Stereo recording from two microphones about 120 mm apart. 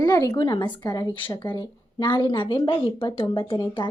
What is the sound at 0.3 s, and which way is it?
A woman's voice, 40° left (ahead or behind).